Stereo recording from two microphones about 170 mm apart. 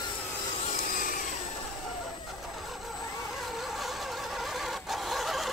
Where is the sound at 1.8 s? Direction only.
Centre (ahead or behind).